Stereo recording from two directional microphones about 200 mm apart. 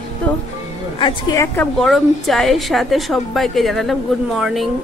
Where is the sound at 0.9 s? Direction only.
20° left (ahead or behind).